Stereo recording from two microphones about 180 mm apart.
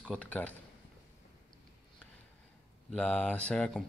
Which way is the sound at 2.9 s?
5° left (ahead or behind).